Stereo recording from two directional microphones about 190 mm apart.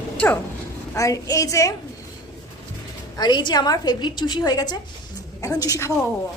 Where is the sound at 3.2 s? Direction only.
25° left (ahead or behind).